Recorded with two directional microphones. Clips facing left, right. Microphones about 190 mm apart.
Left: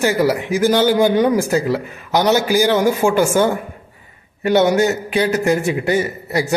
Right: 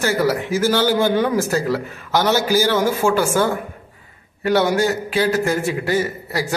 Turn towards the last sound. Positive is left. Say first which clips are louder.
# left 3 dB
turn(degrees=20)  # may be behind; listen again after turning